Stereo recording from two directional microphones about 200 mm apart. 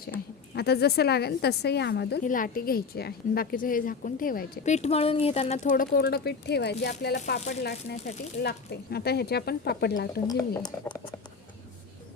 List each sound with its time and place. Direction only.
0.5 s a woman's voice: 55° left (ahead or behind)
2.2 s a woman's voice: 45° left (ahead or behind)
10.2 s speech: 15° left (ahead or behind)